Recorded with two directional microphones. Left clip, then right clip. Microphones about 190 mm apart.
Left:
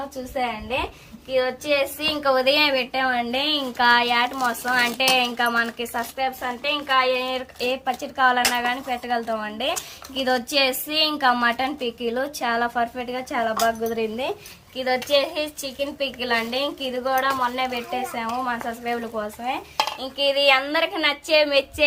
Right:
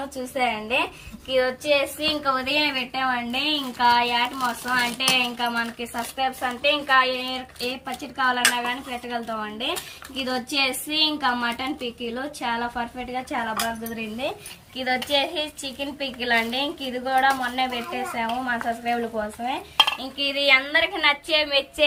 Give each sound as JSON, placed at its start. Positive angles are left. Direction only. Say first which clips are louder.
{"t": 0.3, "sound": "a woman's voice", "louder": "right 2 dB", "side_deg": 10}
{"t": 2.0, "sound": "a woman's voice", "louder": "left 3 dB", "side_deg": 65}
{"t": 6.1, "sound": "speech", "louder": "right 3 dB", "side_deg": 10}
{"t": 6.8, "sound": "speech", "louder": "even", "side_deg": 25}
{"t": 7.1, "sound": "a woman's voice", "louder": "left 4 dB", "side_deg": 45}
{"t": 14.8, "sound": "a woman's voice", "louder": "left 2 dB", "side_deg": 60}
{"t": 20.0, "sound": "a woman's voice", "louder": "left 4 dB", "side_deg": 60}